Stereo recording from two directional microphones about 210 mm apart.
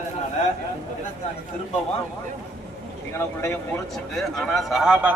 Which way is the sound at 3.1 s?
10° left (ahead or behind).